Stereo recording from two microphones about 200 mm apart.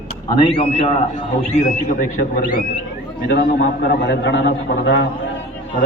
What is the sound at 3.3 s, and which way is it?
A man's voice, 60° left (ahead or behind).